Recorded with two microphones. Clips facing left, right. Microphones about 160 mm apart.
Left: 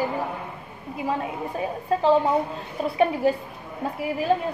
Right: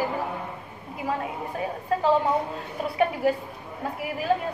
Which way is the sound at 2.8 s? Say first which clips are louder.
Left 4 dB; 25° left (ahead or behind).